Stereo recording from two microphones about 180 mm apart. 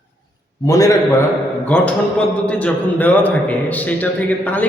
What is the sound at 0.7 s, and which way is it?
A man's voice, 20° left (ahead or behind).